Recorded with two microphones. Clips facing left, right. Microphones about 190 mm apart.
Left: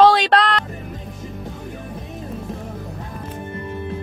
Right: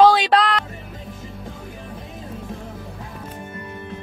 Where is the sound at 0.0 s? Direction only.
5° right (ahead or behind).